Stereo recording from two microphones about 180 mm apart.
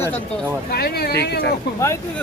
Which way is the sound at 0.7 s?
60° left (ahead or behind).